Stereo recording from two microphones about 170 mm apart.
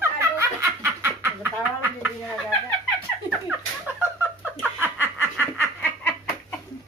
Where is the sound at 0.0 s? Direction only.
15° right (ahead or behind).